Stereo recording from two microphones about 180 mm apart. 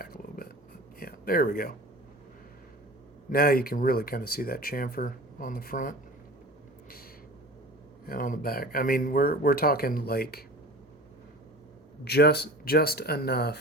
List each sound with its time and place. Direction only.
0.0 s a sound: 55° left (ahead or behind)
3.2 s speech: 55° left (ahead or behind)
8.0 s speech: 50° left (ahead or behind)
12.0 s speech: 65° left (ahead or behind)